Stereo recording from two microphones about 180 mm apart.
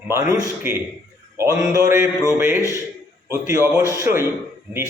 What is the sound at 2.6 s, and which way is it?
Speech, 15° left (ahead or behind).